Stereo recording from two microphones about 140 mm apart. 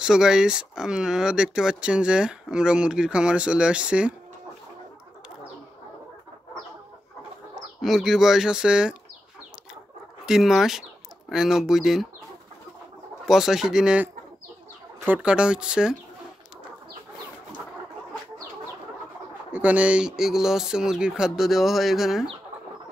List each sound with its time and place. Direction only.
0.0 s speech: 5° right (ahead or behind)
7.8 s speech: centre (ahead or behind)
10.2 s speech: 5° right (ahead or behind)
13.2 s speech: centre (ahead or behind)
19.5 s speech: 10° right (ahead or behind)